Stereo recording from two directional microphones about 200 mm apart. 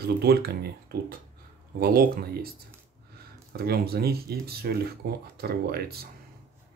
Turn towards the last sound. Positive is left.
turn(degrees=-50)  # may be behind; listen again after turning